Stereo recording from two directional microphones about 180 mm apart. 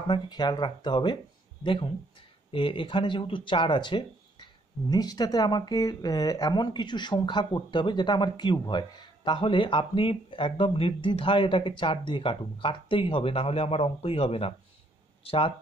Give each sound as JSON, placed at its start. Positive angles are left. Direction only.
{"t": 0.1, "sound": "speech", "side_deg": 25}